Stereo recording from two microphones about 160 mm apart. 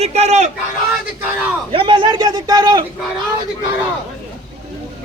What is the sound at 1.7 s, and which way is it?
Speech, 30° right (ahead or behind).